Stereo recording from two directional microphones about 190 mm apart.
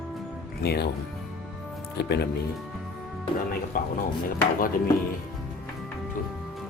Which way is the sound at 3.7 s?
50° left (ahead or behind).